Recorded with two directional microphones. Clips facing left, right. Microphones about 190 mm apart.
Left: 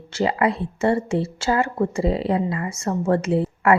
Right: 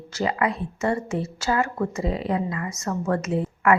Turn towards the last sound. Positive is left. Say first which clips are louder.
# left 3 dB
turn(degrees=30)  # may be behind; listen again after turning